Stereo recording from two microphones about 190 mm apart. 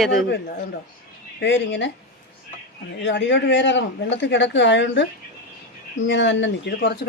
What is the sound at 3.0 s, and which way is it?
Speech, 70° left (ahead or behind).